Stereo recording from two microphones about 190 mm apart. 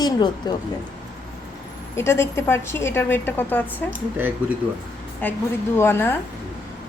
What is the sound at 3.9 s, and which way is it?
Speech, 10° right (ahead or behind).